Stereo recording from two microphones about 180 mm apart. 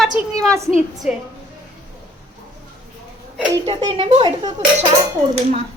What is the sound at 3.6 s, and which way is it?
Speech, 35° right (ahead or behind).